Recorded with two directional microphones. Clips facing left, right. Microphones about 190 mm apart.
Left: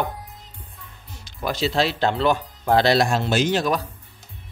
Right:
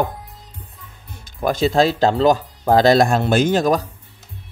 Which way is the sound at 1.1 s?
50° right (ahead or behind).